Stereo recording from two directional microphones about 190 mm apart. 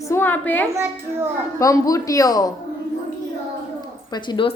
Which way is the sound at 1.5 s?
15° left (ahead or behind).